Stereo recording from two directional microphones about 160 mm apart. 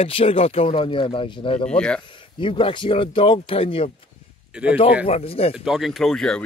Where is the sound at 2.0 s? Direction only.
30° left (ahead or behind).